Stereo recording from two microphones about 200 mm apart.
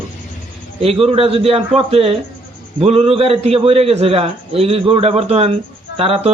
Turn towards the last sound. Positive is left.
turn(degrees=-30)  # may be behind; listen again after turning